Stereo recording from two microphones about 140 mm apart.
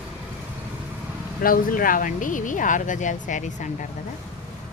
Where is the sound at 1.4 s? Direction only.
90° left; by 3.9 s 65° left (ahead or behind).